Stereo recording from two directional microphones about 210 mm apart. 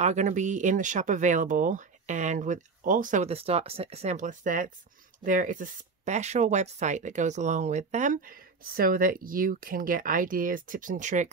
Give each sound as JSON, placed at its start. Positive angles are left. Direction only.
{"t": 0.0, "sound": "speech", "side_deg": -35}